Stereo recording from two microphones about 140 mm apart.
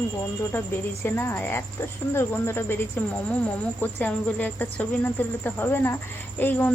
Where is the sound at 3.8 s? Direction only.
10° left (ahead or behind).